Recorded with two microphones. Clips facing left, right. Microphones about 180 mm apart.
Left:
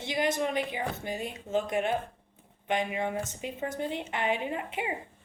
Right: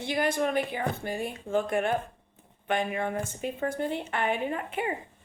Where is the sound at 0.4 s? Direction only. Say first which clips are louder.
Right 3 dB; 55° right (ahead or behind).